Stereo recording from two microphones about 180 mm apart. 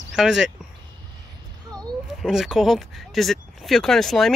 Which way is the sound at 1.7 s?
20° right (ahead or behind).